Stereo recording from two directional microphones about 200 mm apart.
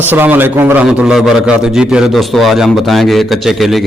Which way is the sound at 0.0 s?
10° right (ahead or behind).